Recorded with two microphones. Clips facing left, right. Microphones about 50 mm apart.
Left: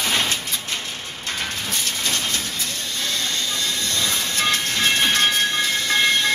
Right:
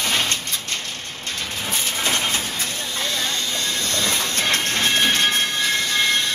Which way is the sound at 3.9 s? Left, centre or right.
Right.